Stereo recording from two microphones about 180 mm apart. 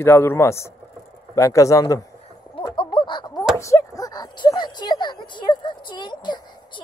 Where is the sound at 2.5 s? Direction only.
30° left (ahead or behind).